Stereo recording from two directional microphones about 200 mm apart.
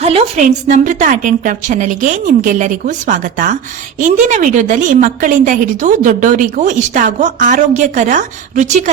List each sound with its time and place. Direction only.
0.0 s a woman's voice: 30° right (ahead or behind)